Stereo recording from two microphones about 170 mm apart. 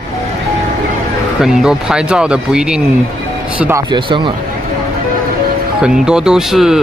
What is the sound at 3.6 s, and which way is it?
Speech, 15° right (ahead or behind).